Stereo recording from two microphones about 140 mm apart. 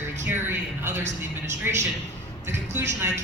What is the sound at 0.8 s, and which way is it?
A woman's voice, 15° right (ahead or behind).